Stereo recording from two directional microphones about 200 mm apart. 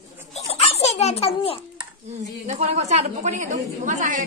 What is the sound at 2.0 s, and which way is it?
A woman's voice, 35° right (ahead or behind).